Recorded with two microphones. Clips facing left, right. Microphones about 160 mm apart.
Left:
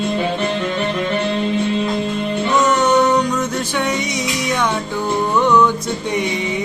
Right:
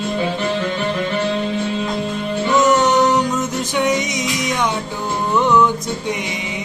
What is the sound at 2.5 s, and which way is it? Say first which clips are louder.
Music: right 1 dB; 20° right (ahead or behind).